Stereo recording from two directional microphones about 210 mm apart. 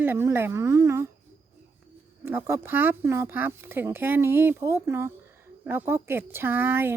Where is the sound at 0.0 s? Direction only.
10° right (ahead or behind).